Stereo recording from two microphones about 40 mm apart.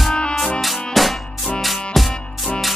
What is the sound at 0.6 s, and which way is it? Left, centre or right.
Music, centre.